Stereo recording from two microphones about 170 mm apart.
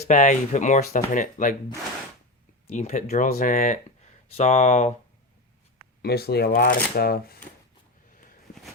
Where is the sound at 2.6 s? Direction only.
45° left (ahead or behind).